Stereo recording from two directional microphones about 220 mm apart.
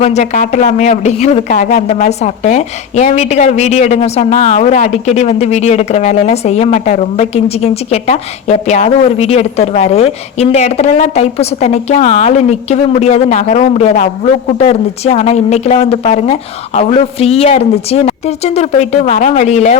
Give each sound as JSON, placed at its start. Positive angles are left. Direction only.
{"t": 0.0, "sound": "speech", "side_deg": 30}